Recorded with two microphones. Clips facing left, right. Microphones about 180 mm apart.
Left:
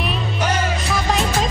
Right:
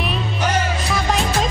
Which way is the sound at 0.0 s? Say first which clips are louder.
Even; centre (ahead or behind).